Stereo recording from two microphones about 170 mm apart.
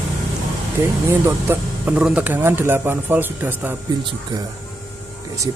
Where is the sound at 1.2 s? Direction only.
10° right (ahead or behind).